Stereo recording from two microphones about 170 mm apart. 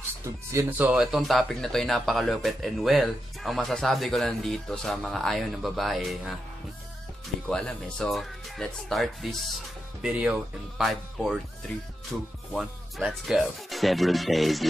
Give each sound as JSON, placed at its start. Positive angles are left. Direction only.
{"t": 0.2, "sound": "speech", "side_deg": -15}
{"t": 7.4, "sound": "speech", "side_deg": 5}